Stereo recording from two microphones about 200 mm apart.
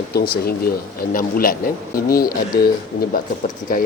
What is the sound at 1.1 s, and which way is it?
Speech, 45° left (ahead or behind).